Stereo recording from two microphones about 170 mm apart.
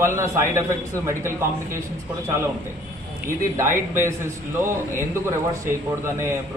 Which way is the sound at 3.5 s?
15° right (ahead or behind).